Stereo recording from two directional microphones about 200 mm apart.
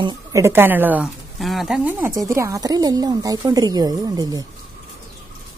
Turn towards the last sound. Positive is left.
turn(degrees=-20)  # may be behind; listen again after turning